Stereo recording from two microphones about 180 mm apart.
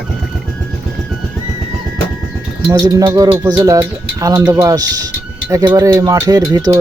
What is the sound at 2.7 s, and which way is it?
Speech, 20° right (ahead or behind).